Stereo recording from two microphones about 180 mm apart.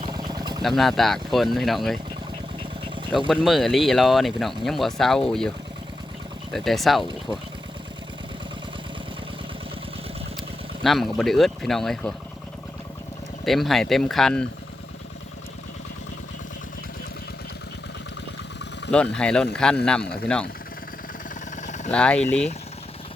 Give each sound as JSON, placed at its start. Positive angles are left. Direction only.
{"t": 0.0, "sound": "vehicle", "side_deg": -20}
{"t": 0.8, "sound": "speech", "side_deg": 0}
{"t": 3.2, "sound": "speech", "side_deg": 0}
{"t": 10.8, "sound": "speech", "side_deg": 0}
{"t": 13.4, "sound": "speech", "side_deg": 0}
{"t": 19.1, "sound": "speech", "side_deg": 5}
{"t": 21.5, "sound": "vehicle", "side_deg": 40}
{"t": 21.9, "sound": "speech", "side_deg": 5}